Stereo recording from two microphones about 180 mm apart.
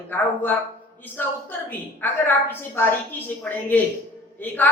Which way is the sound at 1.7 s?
10° left (ahead or behind).